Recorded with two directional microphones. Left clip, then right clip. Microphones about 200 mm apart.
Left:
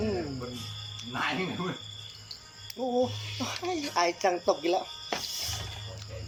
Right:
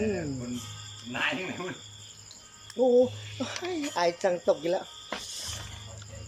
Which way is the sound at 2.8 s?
10° right (ahead or behind).